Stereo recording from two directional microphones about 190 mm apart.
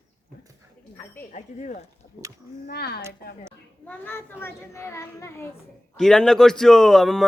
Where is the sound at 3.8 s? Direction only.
10° left (ahead or behind).